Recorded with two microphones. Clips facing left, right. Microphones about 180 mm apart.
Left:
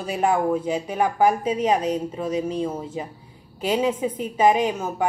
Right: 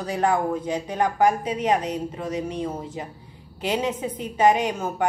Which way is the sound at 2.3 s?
30° left (ahead or behind).